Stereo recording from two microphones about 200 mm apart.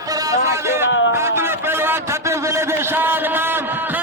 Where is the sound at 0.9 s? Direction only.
65° left (ahead or behind).